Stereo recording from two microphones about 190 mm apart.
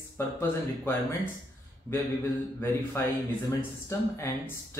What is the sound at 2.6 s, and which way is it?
Speech, 10° left (ahead or behind).